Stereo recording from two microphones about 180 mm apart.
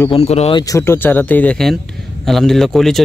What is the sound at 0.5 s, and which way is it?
A man's voice, 20° left (ahead or behind).